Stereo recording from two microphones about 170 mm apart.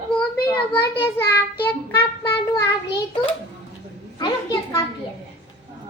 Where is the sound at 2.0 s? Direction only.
15° left (ahead or behind).